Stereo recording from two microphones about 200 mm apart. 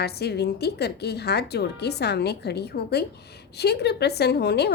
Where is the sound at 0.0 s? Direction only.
55° left (ahead or behind).